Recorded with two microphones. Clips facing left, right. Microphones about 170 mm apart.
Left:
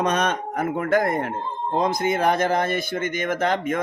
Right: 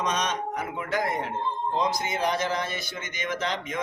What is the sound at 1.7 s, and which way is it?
Speech, 55° left (ahead or behind).